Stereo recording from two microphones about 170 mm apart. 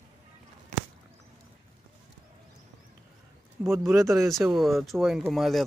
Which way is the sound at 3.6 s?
15° right (ahead or behind).